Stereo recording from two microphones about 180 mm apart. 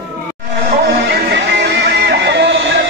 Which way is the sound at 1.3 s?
65° right (ahead or behind).